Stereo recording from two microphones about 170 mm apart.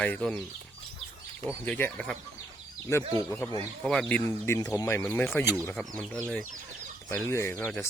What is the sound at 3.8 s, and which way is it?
Speech, 5° left (ahead or behind).